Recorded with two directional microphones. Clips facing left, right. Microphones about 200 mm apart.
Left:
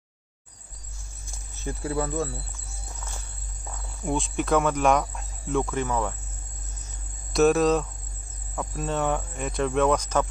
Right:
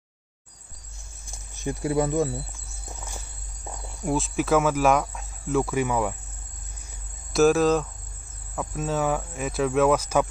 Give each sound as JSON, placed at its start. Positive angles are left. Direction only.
{"t": 1.5, "sound": "speech", "side_deg": -15}
{"t": 4.0, "sound": "speech", "side_deg": -5}
{"t": 7.3, "sound": "speech", "side_deg": 0}